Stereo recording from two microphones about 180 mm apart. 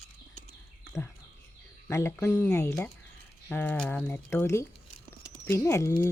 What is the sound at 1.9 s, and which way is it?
Speech, 15° left (ahead or behind).